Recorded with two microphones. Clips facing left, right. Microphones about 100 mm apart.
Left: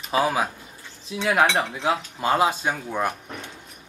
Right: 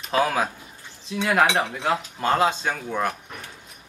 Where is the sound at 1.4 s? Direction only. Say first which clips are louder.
Even; 5° right (ahead or behind).